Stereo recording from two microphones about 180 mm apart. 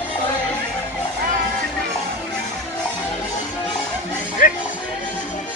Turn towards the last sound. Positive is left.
turn(degrees=50)  # may be behind; listen again after turning